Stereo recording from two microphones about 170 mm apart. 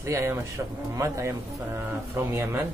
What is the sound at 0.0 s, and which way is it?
Speech, 15° right (ahead or behind).